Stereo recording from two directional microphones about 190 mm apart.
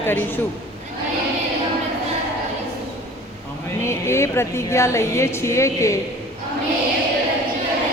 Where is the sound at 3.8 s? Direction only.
15° left (ahead or behind).